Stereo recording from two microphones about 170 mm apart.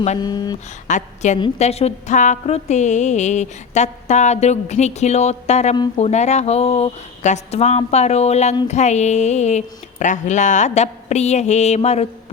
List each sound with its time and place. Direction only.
0.2 s speech: 25° left (ahead or behind)
0.9 s a woman's voice: 45° left (ahead or behind)